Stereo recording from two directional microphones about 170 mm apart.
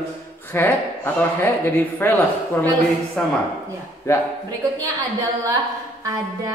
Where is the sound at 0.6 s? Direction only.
10° left (ahead or behind).